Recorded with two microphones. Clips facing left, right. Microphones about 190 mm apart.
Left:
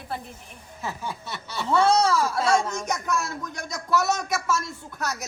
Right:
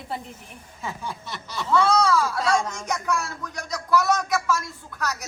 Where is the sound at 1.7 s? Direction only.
30° left (ahead or behind).